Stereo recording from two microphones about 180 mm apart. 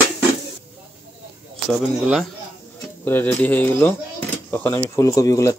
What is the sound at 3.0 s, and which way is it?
Speech, 10° left (ahead or behind).